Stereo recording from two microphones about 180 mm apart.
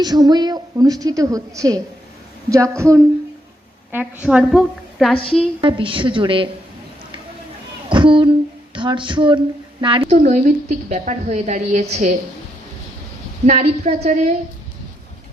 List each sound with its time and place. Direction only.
0.0 s a woman's voice: 25° right (ahead or behind)
3.9 s a woman's voice: 5° right (ahead or behind)
5.5 s a woman's voice: 25° right (ahead or behind)
7.9 s a woman's voice: 30° right (ahead or behind)
10.1 s a woman's voice: 40° right (ahead or behind)
13.5 s a woman's voice: 40° right (ahead or behind)